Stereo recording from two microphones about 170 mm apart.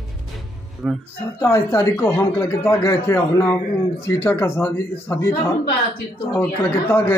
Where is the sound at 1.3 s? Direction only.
15° left (ahead or behind).